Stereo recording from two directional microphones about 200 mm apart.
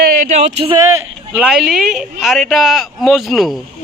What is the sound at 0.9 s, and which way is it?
Speech, 5° right (ahead or behind).